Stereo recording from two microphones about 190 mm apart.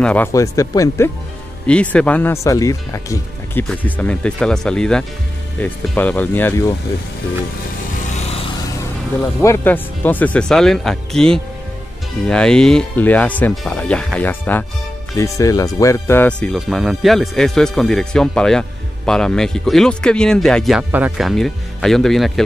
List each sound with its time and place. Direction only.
0.0 s speech: 5° left (ahead or behind)
9.4 s speech: 10° left (ahead or behind)